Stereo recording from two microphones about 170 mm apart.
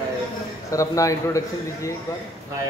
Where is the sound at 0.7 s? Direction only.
20° left (ahead or behind).